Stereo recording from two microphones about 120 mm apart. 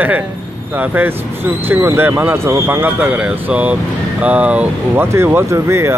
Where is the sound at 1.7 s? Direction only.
15° right (ahead or behind).